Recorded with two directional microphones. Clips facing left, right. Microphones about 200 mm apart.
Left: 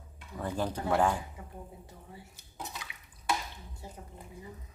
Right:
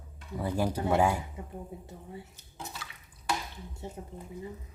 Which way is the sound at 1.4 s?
20° right (ahead or behind).